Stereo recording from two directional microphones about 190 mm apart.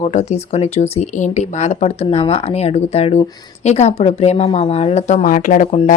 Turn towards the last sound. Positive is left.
turn(degrees=35)  # may be behind; listen again after turning